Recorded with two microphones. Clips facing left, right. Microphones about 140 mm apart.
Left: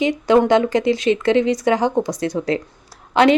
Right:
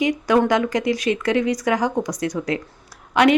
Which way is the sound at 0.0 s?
25° left (ahead or behind).